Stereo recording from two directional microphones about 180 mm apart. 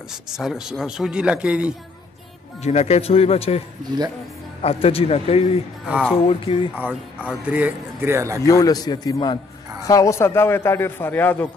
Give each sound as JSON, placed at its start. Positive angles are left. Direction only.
{"t": 0.1, "sound": "a man's voice", "side_deg": 0}
{"t": 2.6, "sound": "speech", "side_deg": 40}
{"t": 7.2, "sound": "speech", "side_deg": -10}
{"t": 8.5, "sound": "a man's voice", "side_deg": 20}